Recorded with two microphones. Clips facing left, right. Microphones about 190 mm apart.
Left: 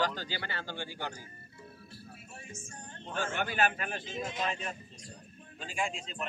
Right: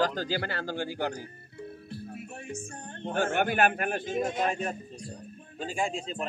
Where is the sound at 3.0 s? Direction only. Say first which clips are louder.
Right 8 dB; 60° right (ahead or behind).